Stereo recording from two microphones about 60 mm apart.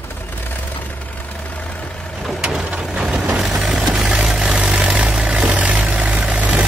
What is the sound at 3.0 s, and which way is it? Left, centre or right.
Vehicle, right.